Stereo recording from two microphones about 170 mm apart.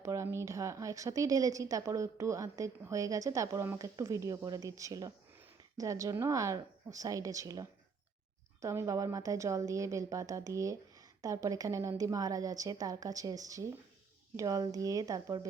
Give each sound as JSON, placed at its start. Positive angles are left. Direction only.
{"t": 0.0, "sound": "a woman's voice", "side_deg": -15}